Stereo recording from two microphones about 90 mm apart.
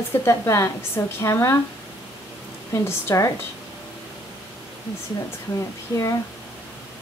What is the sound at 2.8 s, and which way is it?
Speech, 35° left (ahead or behind).